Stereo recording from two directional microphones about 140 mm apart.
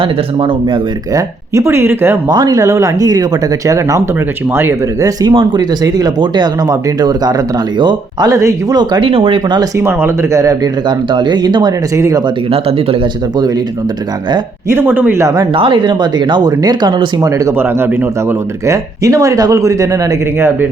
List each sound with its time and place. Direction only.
0.0 s speech: 35° right (ahead or behind)
1.5 s speech: 20° right (ahead or behind)
5.3 s speech: 35° right (ahead or behind)
9.7 s speech: 20° right (ahead or behind)
12.5 s speech: 45° right (ahead or behind)
14.7 s speech: 15° right (ahead or behind)
15.5 s speech: 40° right (ahead or behind)